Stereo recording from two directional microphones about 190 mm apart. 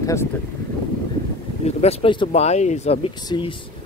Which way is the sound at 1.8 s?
30° left (ahead or behind).